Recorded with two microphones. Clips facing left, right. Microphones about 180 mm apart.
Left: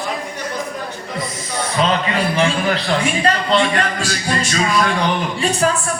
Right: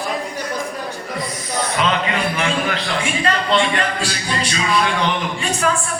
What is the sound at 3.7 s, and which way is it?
Music, 45° left (ahead or behind).